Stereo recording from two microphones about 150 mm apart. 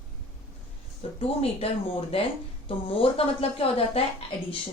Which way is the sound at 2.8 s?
40° left (ahead or behind).